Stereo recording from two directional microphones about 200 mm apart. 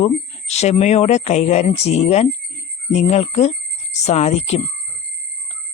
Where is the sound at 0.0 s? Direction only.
35° left (ahead or behind).